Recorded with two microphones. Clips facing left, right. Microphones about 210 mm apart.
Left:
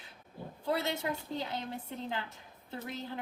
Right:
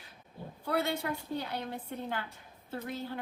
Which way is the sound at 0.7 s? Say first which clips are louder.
Right 1 dB; 20° left (ahead or behind).